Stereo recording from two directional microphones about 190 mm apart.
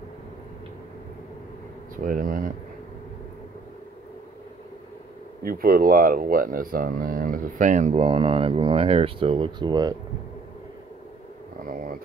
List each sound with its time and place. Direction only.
2.0 s speech: 45° right (ahead or behind)
5.4 s speech: 50° right (ahead or behind); by 9.9 s 20° right (ahead or behind)
11.6 s a sound: 45° right (ahead or behind)